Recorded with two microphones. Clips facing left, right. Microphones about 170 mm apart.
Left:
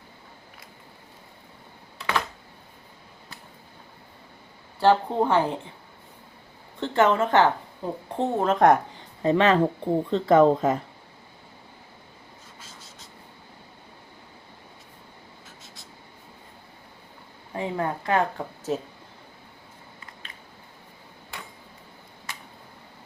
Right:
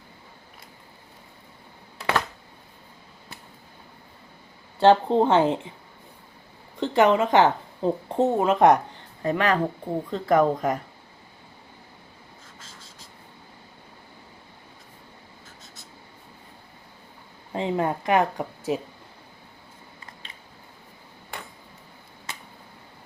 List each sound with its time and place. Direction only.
4.8 s speech: 20° right (ahead or behind)
6.7 s a woman's voice: 15° right (ahead or behind)
8.2 s speech: 5° right (ahead or behind)
9.2 s speech: 25° left (ahead or behind)
17.5 s speech: 20° right (ahead or behind)